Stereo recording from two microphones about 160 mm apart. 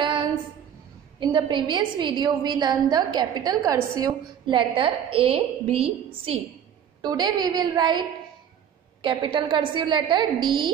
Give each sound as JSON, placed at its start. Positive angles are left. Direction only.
{"t": 0.0, "sound": "a sound", "side_deg": -30}
{"t": 1.2, "sound": "a woman's voice", "side_deg": -30}
{"t": 7.0, "sound": "a woman's voice", "side_deg": -25}
{"t": 9.0, "sound": "a woman's voice", "side_deg": -30}